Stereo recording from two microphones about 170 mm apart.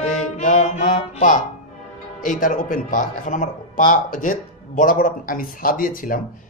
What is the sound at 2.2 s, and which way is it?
A man's voice, 50° left (ahead or behind).